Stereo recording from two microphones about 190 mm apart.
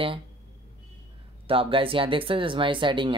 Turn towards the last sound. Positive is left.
turn(degrees=-25)  # may be behind; listen again after turning